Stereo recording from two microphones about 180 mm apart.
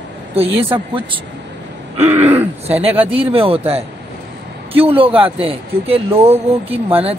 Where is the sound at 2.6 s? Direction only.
35° right (ahead or behind).